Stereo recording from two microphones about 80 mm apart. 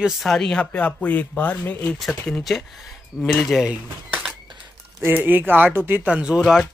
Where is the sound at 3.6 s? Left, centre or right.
Centre.